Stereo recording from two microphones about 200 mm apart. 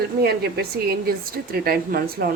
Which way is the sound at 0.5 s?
50° right (ahead or behind).